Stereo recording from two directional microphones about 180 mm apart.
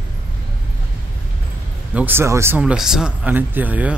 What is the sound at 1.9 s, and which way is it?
Speech, 10° right (ahead or behind).